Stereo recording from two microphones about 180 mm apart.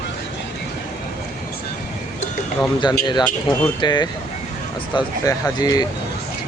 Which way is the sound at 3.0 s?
25° left (ahead or behind).